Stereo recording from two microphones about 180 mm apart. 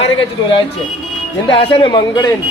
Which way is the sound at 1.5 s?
30° left (ahead or behind).